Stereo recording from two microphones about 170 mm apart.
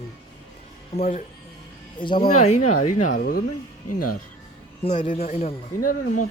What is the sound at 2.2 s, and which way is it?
Speech, 50° left (ahead or behind).